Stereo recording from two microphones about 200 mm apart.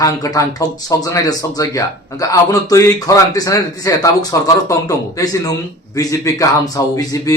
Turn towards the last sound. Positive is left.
turn(degrees=15)  # may be behind; listen again after turning